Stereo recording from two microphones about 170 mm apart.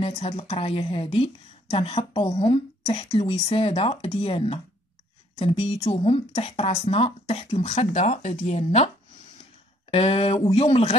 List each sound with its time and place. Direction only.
0.0 s a woman's voice: 35° left (ahead or behind)